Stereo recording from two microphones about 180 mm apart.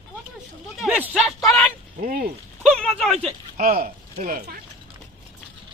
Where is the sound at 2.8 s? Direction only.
Centre (ahead or behind).